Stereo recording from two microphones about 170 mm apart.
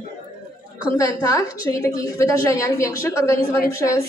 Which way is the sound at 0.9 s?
20° left (ahead or behind).